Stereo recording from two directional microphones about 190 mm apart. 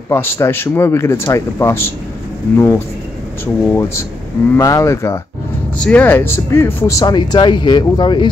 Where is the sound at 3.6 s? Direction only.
15° left (ahead or behind).